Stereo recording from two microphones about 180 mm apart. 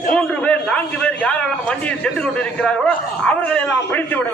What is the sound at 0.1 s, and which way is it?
A man's voice, 5° left (ahead or behind).